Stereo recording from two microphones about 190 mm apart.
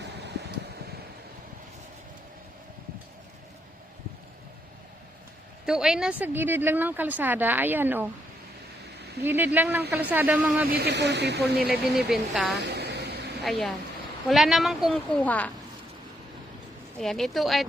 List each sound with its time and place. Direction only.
5.6 s speech: 5° right (ahead or behind)
9.2 s speech: 10° right (ahead or behind)
10.7 s speech: 60° right (ahead or behind)
11.6 s a woman's voice: centre (ahead or behind)
12.5 s a sound: 60° right (ahead or behind)
13.4 s a woman's voice: centre (ahead or behind)
17.0 s a woman's voice: centre (ahead or behind)